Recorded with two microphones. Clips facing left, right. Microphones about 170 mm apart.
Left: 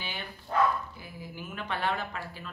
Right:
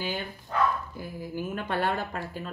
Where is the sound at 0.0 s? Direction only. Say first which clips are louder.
Right 8 dB; 45° right (ahead or behind).